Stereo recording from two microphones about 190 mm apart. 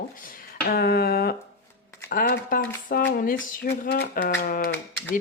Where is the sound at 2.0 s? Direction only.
50° left (ahead or behind).